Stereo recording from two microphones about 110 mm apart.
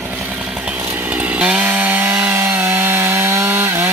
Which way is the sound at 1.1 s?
10° right (ahead or behind).